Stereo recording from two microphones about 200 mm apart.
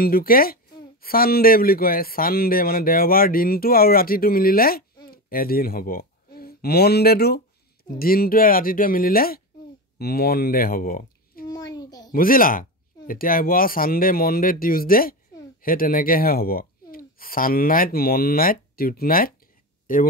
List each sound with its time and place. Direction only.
0.0 s speech: 45° left (ahead or behind)
11.4 s a sound: 20° left (ahead or behind)
12.1 s speech: 45° left (ahead or behind)